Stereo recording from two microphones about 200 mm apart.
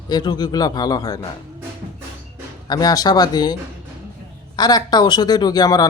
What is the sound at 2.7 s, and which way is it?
Speech, 20° left (ahead or behind).